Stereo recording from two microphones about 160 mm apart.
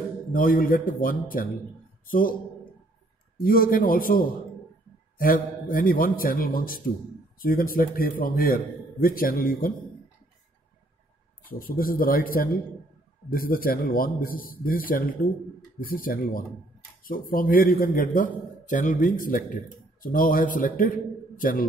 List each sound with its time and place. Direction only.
0.3 s a man's voice: 60° left (ahead or behind)
3.3 s a man's voice: 65° left (ahead or behind)
11.4 s a man's voice: 65° left (ahead or behind)